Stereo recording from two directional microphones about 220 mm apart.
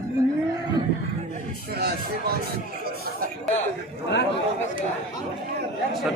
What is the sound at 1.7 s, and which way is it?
Speech, 50° right (ahead or behind).